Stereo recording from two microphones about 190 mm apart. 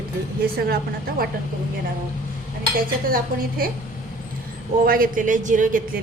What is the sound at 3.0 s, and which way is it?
Speech, 50° right (ahead or behind).